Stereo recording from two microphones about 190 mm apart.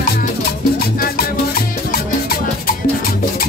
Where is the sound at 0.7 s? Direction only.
55° left (ahead or behind).